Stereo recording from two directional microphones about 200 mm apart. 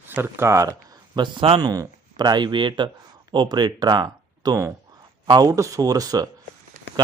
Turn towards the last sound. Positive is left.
turn(degrees=-20)  # may be behind; listen again after turning